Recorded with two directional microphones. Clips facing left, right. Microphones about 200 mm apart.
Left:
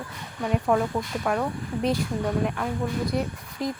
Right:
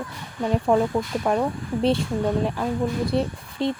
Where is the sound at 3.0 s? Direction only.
30° right (ahead or behind).